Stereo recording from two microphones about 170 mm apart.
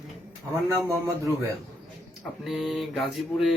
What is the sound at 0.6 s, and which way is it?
Speech, 20° right (ahead or behind).